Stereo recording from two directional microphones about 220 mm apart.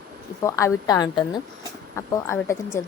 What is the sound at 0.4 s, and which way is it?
Speech, 15° left (ahead or behind).